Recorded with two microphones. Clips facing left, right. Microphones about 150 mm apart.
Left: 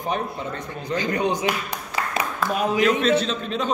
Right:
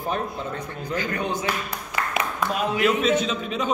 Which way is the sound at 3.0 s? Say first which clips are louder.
Left 1 dB; 10° right (ahead or behind).